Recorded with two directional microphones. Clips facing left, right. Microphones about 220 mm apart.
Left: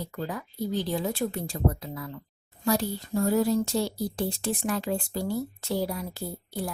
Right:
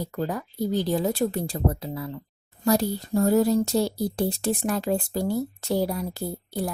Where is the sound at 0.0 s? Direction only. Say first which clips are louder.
Right 5 dB; 40° right (ahead or behind).